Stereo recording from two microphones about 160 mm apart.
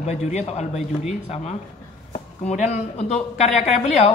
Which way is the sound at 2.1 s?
50° left (ahead or behind).